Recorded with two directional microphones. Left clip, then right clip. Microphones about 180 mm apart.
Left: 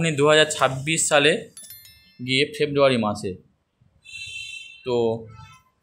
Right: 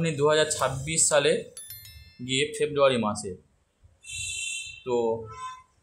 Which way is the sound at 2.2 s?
20° left (ahead or behind).